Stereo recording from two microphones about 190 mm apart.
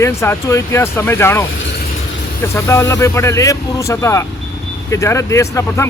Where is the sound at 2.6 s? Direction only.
15° left (ahead or behind).